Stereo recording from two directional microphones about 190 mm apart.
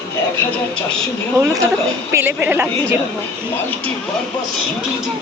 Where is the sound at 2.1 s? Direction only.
10° right (ahead or behind).